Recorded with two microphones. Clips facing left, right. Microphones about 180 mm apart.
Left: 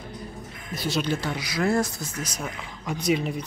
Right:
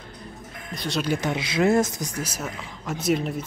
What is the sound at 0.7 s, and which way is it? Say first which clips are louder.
Speech: left 1 dB; centre (ahead or behind).